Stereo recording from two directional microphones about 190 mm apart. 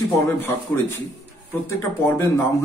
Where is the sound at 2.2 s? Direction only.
15° left (ahead or behind).